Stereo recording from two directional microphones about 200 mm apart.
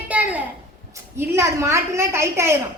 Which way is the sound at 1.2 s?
15° right (ahead or behind).